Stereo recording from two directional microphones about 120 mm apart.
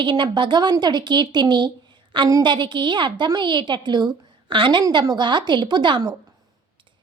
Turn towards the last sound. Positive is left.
turn(degrees=-35)  # may be behind; listen again after turning